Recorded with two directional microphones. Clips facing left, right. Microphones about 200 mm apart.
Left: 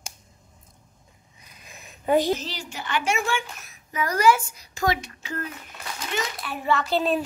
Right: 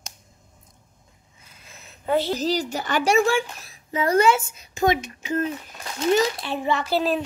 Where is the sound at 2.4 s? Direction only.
40° right (ahead or behind); by 5.5 s 20° right (ahead or behind).